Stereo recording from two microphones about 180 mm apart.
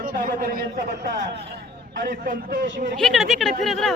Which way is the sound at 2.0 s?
50° right (ahead or behind).